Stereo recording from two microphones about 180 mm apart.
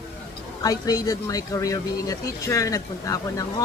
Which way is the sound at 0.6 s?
20° left (ahead or behind).